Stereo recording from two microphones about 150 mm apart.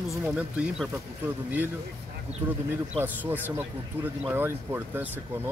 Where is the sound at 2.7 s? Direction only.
15° right (ahead or behind).